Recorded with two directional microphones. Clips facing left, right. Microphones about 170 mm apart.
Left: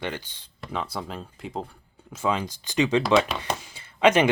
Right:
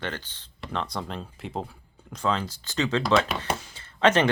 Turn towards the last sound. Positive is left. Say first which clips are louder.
# left 2 dB
turn(degrees=10)  # may be behind; listen again after turning